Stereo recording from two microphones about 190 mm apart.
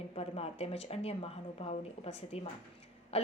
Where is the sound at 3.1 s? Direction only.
30° left (ahead or behind).